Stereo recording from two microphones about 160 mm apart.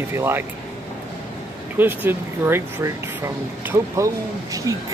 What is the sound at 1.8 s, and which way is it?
Speech, 10° right (ahead or behind).